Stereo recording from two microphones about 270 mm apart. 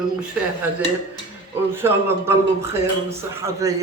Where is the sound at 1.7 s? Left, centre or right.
Centre.